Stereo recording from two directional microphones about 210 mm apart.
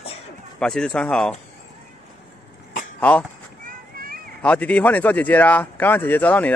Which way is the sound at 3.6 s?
45° right (ahead or behind).